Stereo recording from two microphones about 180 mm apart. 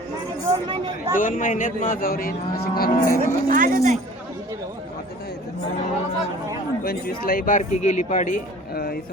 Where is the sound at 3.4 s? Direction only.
50° right (ahead or behind).